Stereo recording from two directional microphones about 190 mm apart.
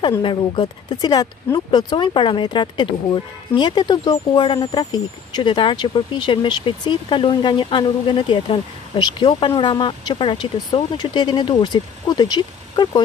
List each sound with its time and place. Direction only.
0.2 s speech: 25° left (ahead or behind)